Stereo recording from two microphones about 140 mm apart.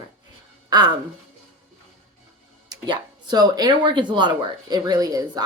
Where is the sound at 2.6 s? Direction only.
30° right (ahead or behind).